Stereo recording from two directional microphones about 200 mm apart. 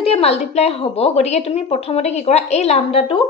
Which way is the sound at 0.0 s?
30° left (ahead or behind).